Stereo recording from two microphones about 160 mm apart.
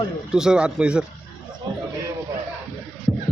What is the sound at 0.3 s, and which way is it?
Speech, 5° right (ahead or behind).